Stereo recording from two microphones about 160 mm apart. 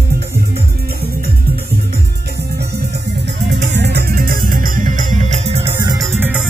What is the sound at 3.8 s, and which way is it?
Music, 90° right.